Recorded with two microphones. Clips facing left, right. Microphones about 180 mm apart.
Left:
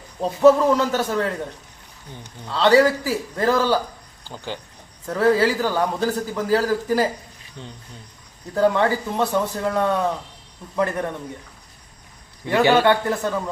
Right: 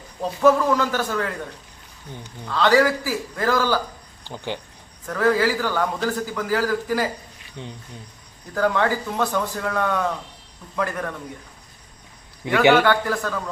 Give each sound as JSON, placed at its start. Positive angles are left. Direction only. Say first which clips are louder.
{"t": 0.2, "sound": "a man's voice", "louder": "left 3 dB", "side_deg": 25}
{"t": 2.5, "sound": "a man's voice", "louder": "left 2 dB", "side_deg": 30}
{"t": 4.3, "sound": "speech", "louder": "right 2 dB", "side_deg": -15}
{"t": 5.0, "sound": "a man's voice", "louder": "left 2 dB", "side_deg": 30}
{"t": 8.5, "sound": "a man's voice", "louder": "left 3 dB", "side_deg": 20}
{"t": 12.7, "sound": "a man's voice", "louder": "left 1 dB", "side_deg": 25}